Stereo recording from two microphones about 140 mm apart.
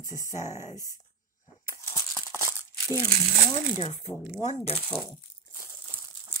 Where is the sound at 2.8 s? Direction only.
20° left (ahead or behind).